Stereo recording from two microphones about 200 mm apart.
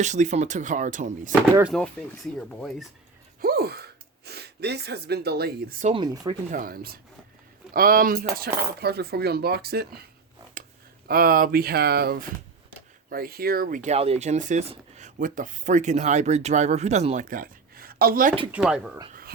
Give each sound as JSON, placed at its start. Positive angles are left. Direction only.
{"t": 0.0, "sound": "speech", "side_deg": -35}
{"t": 1.7, "sound": "speech", "side_deg": 5}
{"t": 3.4, "sound": "gasp", "side_deg": -50}
{"t": 4.3, "sound": "speech", "side_deg": -55}
{"t": 5.9, "sound": "speech", "side_deg": -20}
{"t": 6.5, "sound": "speech", "side_deg": -45}
{"t": 11.1, "sound": "speech", "side_deg": -50}
{"t": 18.5, "sound": "speech", "side_deg": -5}